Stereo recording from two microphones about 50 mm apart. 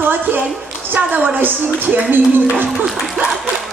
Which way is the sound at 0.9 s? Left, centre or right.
Right.